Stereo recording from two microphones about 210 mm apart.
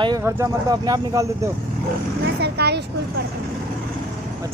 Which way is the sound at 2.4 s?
50° right (ahead or behind).